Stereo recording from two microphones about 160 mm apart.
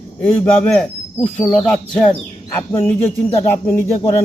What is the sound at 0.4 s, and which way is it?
Speech, 5° left (ahead or behind).